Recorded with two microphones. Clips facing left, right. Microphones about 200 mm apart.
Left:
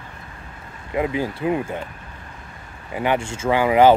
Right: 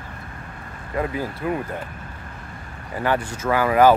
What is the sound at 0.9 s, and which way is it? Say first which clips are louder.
Speech: left 3 dB; 20° left (ahead or behind).